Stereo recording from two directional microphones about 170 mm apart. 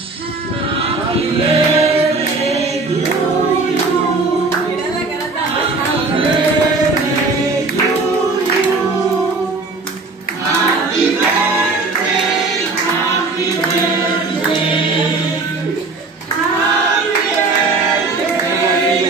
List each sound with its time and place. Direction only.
1.5 s choir: 35° right (ahead or behind)